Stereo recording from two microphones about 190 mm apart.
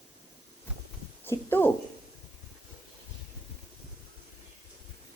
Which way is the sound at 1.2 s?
10° left (ahead or behind).